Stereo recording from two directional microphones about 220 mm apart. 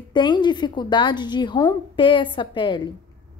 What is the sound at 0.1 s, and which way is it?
Speech, 20° left (ahead or behind).